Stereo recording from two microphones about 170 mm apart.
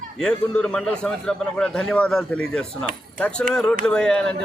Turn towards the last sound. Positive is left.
turn(degrees=5)  # may be behind; listen again after turning